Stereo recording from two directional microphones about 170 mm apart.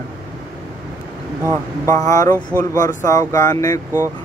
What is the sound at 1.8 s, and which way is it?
Speech, 20° left (ahead or behind).